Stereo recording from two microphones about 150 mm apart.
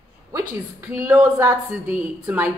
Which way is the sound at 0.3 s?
20° right (ahead or behind).